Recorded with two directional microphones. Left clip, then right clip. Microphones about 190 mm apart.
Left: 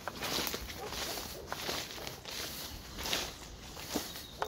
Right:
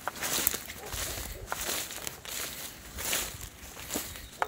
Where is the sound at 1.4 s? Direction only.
60° right (ahead or behind).